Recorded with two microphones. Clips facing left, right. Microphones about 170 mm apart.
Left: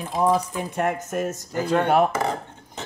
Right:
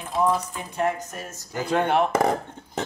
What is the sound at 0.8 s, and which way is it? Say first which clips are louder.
Speech: left 1 dB; 55° left (ahead or behind).